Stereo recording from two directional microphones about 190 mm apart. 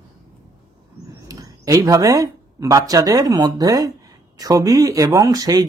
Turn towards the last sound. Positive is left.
turn(degrees=-20)  # may be behind; listen again after turning